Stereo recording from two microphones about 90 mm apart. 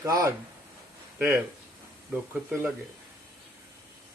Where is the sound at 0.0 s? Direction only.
35° right (ahead or behind).